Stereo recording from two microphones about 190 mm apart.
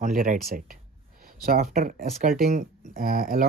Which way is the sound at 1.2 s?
50° right (ahead or behind).